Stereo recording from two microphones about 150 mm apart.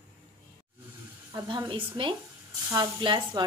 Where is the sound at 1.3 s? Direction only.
30° right (ahead or behind).